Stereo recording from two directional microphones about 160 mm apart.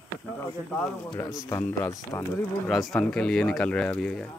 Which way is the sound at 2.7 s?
Centre (ahead or behind).